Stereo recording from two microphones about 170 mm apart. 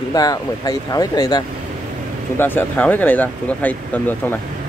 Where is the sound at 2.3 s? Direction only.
10° left (ahead or behind).